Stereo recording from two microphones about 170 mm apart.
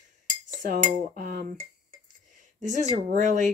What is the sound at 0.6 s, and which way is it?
Cutlery, 55° right (ahead or behind).